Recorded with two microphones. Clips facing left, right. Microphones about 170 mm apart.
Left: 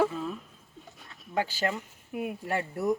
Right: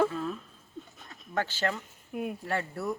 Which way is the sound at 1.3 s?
10° left (ahead or behind).